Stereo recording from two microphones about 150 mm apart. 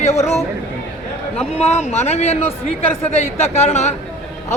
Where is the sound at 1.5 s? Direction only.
45° left (ahead or behind).